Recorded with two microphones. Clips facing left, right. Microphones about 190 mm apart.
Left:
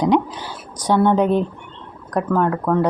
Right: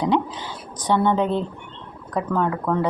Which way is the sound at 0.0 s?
10° left (ahead or behind).